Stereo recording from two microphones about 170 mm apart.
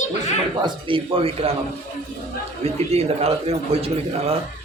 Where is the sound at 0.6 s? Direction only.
30° right (ahead or behind).